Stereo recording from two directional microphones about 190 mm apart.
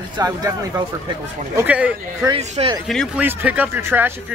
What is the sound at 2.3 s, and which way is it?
Speech, 30° right (ahead or behind).